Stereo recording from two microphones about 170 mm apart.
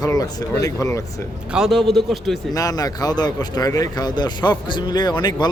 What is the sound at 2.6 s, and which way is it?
Speech, 20° left (ahead or behind).